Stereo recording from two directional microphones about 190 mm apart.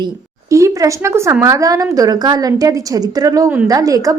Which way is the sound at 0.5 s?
15° right (ahead or behind).